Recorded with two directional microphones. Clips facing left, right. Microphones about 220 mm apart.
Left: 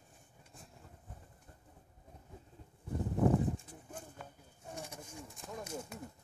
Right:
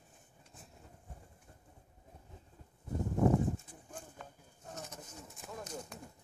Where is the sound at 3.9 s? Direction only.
10° left (ahead or behind).